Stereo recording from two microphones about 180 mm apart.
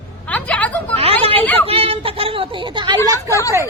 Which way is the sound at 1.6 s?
30° right (ahead or behind).